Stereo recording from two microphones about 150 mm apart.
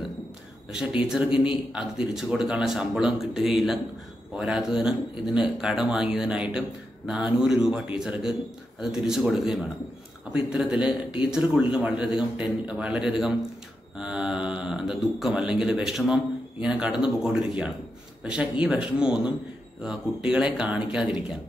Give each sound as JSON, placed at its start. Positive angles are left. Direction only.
{"t": 0.7, "sound": "a man's voice", "side_deg": -5}